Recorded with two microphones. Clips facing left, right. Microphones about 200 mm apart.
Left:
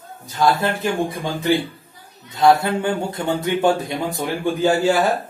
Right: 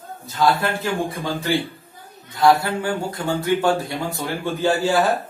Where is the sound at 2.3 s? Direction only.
20° left (ahead or behind).